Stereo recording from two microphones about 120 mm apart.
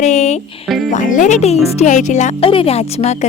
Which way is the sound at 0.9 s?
90° left.